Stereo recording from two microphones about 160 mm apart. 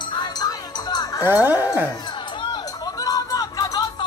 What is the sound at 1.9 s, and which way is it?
Music, 25° left (ahead or behind).